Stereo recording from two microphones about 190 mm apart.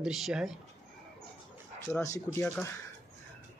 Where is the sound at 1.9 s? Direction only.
15° left (ahead or behind).